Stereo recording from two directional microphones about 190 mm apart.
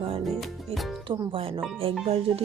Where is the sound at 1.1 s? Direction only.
30° right (ahead or behind).